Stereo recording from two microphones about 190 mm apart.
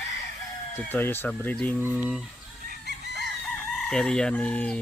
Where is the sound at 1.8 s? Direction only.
5° right (ahead or behind).